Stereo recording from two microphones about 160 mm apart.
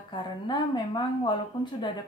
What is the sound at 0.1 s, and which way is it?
A woman's voice, 30° left (ahead or behind).